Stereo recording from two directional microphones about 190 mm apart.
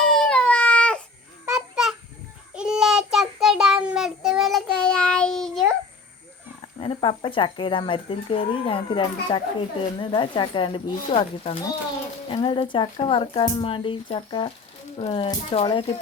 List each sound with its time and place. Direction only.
0.1 s baby cry: 5° left (ahead or behind)
1.5 s goose: 5° right (ahead or behind)
2.6 s child singing: 5° right (ahead or behind)
6.7 s speech: 25° left (ahead or behind)